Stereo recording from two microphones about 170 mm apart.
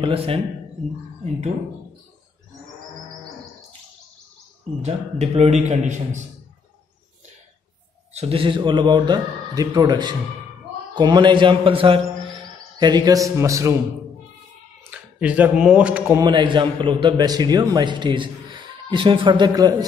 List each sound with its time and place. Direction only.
0.0 s a man's voice: 35° right (ahead or behind)
4.8 s a man's voice: 35° right (ahead or behind)
8.1 s a man's voice: 35° right (ahead or behind); by 13.7 s 20° right (ahead or behind)
14.8 s speech: 10° right (ahead or behind)
16.1 s a man's voice: 25° right (ahead or behind)